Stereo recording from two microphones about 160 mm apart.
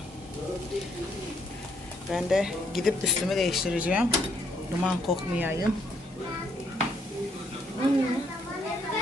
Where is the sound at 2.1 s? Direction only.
Centre (ahead or behind).